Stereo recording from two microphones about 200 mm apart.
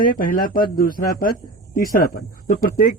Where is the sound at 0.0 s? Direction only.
45° left (ahead or behind).